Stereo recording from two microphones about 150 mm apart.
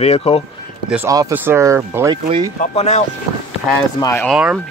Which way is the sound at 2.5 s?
45° left (ahead or behind).